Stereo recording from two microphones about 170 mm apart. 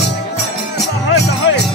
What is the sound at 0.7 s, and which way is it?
Music, 85° left.